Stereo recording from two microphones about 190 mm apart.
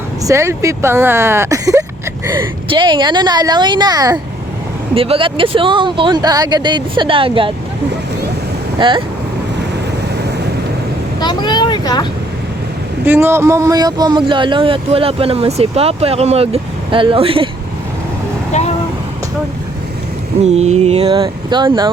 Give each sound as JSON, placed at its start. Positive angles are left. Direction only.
{"t": 0.3, "sound": "speech", "side_deg": -15}
{"t": 8.8, "sound": "speech", "side_deg": -25}
{"t": 11.2, "sound": "vehicle", "side_deg": 25}
{"t": 13.1, "sound": "speech", "side_deg": -15}
{"t": 18.5, "sound": "vehicle", "side_deg": 35}
{"t": 20.4, "sound": "mantra", "side_deg": -35}
{"t": 21.2, "sound": "speech", "side_deg": -25}